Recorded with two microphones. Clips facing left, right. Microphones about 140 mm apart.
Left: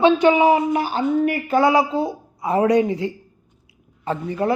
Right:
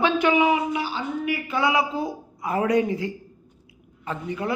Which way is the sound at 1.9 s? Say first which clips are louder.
Left 5 dB; 25° left (ahead or behind).